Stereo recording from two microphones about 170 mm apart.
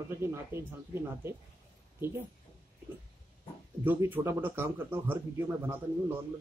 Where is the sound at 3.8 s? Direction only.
10° right (ahead or behind).